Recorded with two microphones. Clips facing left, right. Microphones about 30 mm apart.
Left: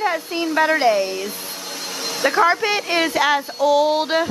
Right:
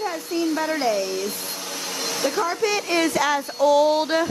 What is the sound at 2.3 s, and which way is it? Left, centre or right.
Speech, left.